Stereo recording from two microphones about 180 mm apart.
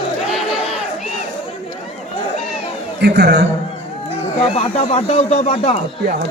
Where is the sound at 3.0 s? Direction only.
65° right (ahead or behind).